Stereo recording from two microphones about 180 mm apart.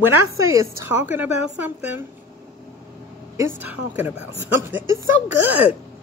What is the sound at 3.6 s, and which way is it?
Speech, 10° right (ahead or behind).